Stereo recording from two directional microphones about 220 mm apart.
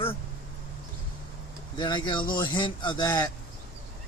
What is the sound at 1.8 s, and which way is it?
A man's voice, 20° left (ahead or behind).